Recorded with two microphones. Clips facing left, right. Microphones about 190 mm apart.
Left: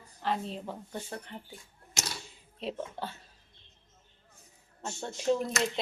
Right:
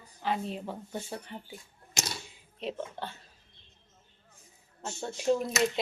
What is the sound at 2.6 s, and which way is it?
Speech, centre (ahead or behind).